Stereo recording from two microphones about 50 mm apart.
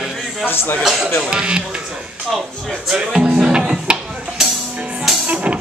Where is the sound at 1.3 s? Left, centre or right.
Centre.